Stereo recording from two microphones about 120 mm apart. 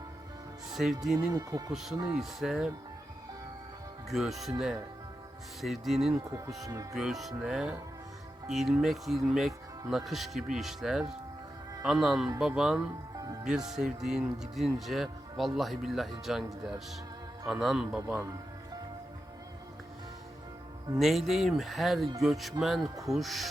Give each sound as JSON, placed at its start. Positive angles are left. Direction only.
{"t": 0.7, "sound": "speech", "side_deg": 0}
{"t": 1.3, "sound": "speech", "side_deg": -30}
{"t": 1.7, "sound": "speech", "side_deg": -5}
{"t": 4.1, "sound": "speech", "side_deg": 0}
{"t": 5.6, "sound": "speech", "side_deg": 0}
{"t": 13.1, "sound": "music", "side_deg": -30}
{"t": 13.7, "sound": "speech", "side_deg": -5}
{"t": 17.4, "sound": "speech", "side_deg": 0}
{"t": 18.2, "sound": "music", "side_deg": -30}
{"t": 21.0, "sound": "speech", "side_deg": 0}